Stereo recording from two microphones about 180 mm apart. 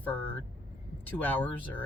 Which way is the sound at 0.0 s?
10° left (ahead or behind).